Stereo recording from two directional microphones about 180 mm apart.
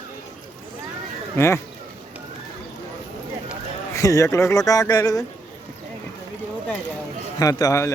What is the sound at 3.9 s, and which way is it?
Speech, 15° left (ahead or behind).